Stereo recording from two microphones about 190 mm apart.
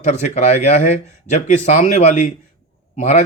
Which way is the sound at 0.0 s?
35° left (ahead or behind).